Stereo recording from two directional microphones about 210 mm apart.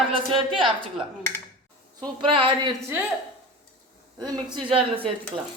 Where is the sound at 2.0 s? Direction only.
25° right (ahead or behind).